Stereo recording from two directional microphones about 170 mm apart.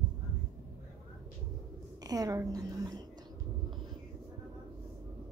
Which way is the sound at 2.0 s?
20° right (ahead or behind).